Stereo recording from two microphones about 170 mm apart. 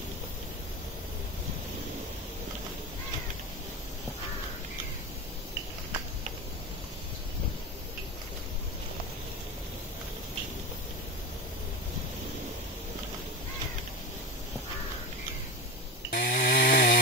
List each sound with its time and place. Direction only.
16.1 s chainsaw: 60° left (ahead or behind)